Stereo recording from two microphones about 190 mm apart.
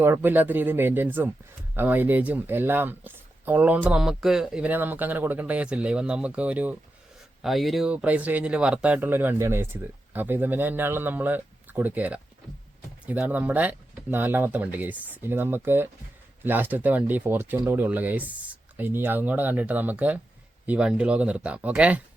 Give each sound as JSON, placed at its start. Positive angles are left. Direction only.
{"t": 0.0, "sound": "speech", "side_deg": -10}